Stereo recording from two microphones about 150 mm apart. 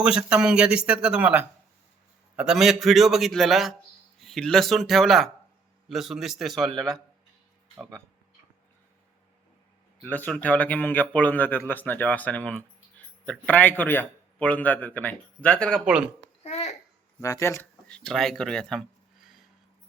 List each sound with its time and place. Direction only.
0.0 s a man's voice: 5° right (ahead or behind)
10.0 s speech: 10° left (ahead or behind)
15.9 s speech: 5° right (ahead or behind)
16.4 s babbling: 45° left (ahead or behind)
17.2 s speech: 20° left (ahead or behind)
17.8 s speech: 5° left (ahead or behind)